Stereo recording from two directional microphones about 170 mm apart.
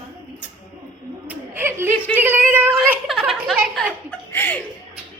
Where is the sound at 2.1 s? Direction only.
15° right (ahead or behind).